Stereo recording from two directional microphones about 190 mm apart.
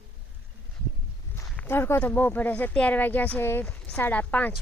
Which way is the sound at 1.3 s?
10° left (ahead or behind).